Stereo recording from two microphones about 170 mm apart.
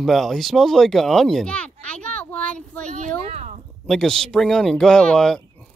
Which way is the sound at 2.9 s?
40° right (ahead or behind).